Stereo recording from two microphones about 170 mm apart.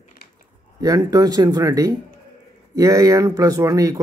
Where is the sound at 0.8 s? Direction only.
20° right (ahead or behind).